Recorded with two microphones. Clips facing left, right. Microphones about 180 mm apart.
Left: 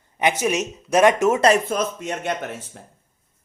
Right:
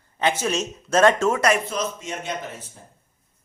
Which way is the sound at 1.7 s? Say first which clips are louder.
Left 4 dB; 60° left (ahead or behind).